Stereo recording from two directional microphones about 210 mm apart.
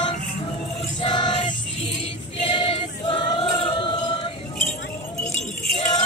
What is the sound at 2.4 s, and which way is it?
Choir, 25° left (ahead or behind).